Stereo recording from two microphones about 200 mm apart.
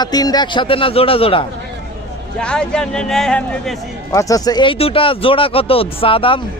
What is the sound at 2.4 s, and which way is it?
Speech, 5° left (ahead or behind).